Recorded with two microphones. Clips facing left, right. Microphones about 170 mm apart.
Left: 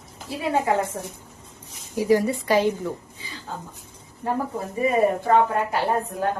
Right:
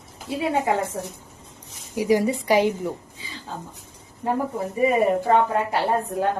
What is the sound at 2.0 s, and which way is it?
Speech, 15° right (ahead or behind).